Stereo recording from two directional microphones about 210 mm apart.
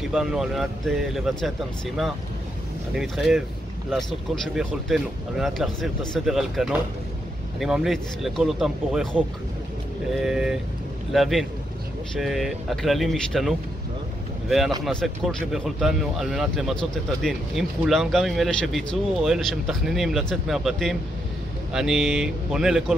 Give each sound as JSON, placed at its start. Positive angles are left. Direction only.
{"t": 0.0, "sound": "speech", "side_deg": 0}
{"t": 2.9, "sound": "speech", "side_deg": 0}
{"t": 4.6, "sound": "speech", "side_deg": 0}
{"t": 14.9, "sound": "speech", "side_deg": 5}